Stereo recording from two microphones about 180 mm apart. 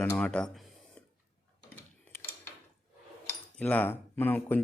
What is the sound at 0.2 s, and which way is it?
Speech, 5° left (ahead or behind).